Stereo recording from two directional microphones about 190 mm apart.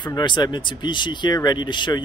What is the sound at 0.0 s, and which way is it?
Speech, 25° left (ahead or behind).